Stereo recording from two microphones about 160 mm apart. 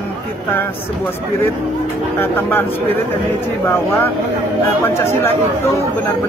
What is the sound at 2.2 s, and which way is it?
Speech, 15° left (ahead or behind).